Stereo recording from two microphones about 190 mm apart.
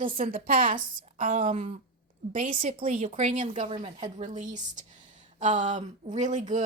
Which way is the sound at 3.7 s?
25° right (ahead or behind).